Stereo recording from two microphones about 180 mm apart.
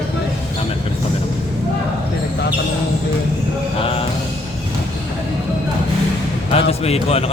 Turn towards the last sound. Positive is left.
turn(degrees=35)  # may be behind; listen again after turning